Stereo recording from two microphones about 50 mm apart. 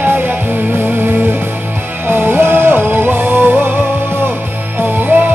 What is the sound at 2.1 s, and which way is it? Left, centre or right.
Music, right.